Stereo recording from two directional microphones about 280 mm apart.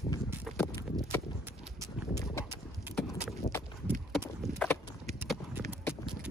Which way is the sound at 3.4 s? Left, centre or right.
Left.